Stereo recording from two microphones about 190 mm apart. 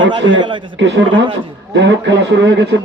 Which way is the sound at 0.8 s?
75° right (ahead or behind).